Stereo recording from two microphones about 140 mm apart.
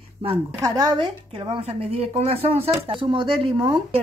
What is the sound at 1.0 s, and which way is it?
Speech, 40° right (ahead or behind).